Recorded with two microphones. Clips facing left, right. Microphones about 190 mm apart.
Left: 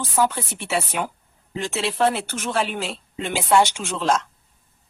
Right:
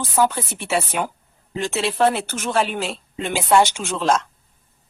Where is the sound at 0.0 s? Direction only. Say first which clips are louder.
Right 2 dB; 45° right (ahead or behind).